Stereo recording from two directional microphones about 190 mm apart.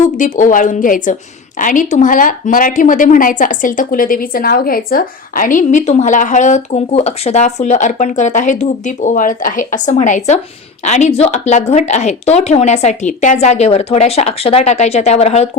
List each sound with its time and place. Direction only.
0.2 s speech: 45° left (ahead or behind)